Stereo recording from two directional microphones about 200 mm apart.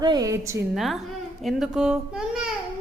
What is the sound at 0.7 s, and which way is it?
Speech, centre (ahead or behind).